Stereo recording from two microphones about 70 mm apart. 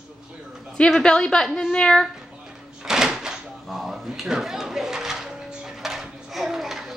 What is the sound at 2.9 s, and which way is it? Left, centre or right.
Door, centre.